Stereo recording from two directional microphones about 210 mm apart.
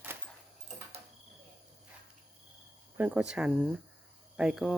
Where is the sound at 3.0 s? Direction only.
5° right (ahead or behind).